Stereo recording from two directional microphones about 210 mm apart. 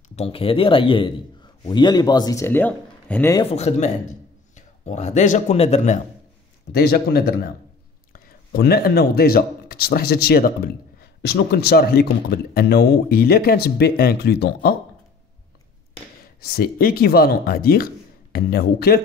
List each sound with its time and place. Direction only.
0.1 s a man's voice: 25° left (ahead or behind); by 3.4 s 10° left (ahead or behind)
3.4 s speech: 30° left (ahead or behind)
6.7 s a man's voice: 45° left (ahead or behind)
16.3 s a man's voice: 45° left (ahead or behind)